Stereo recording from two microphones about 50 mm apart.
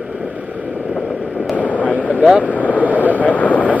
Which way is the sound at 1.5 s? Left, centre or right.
Left.